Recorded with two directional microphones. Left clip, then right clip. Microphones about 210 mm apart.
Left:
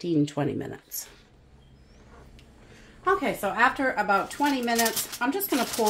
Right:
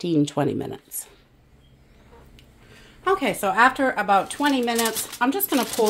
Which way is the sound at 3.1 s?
45° right (ahead or behind).